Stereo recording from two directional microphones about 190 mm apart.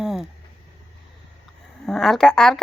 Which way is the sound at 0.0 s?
Centre (ahead or behind).